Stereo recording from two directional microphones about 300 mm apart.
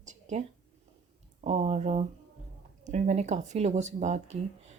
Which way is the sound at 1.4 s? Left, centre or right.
Right.